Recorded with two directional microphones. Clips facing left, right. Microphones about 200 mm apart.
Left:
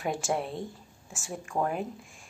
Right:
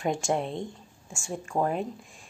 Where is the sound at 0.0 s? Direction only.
5° left (ahead or behind).